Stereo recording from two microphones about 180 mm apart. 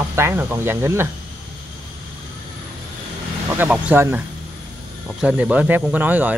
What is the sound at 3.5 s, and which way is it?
Speech, 10° right (ahead or behind).